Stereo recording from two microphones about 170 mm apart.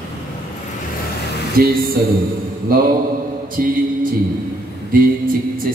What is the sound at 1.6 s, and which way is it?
Mantra, 65° right (ahead or behind).